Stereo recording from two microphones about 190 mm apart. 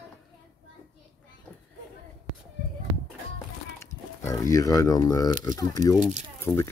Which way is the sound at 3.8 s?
15° left (ahead or behind).